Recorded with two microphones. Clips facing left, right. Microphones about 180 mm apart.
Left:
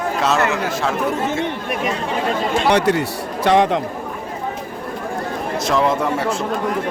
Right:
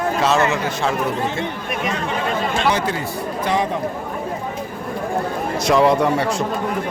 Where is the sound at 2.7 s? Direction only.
65° left (ahead or behind).